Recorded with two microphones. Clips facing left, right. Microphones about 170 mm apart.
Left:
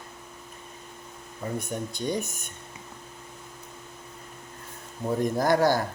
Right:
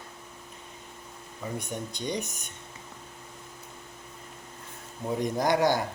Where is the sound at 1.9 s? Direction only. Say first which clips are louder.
Left 4 dB; 20° right (ahead or behind).